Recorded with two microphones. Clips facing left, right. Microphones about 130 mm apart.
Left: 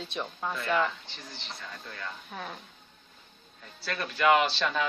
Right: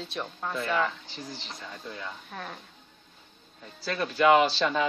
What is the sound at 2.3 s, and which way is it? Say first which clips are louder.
Speech: even; centre (ahead or behind).